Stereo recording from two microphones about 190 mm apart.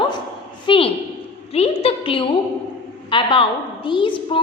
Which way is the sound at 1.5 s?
30° left (ahead or behind).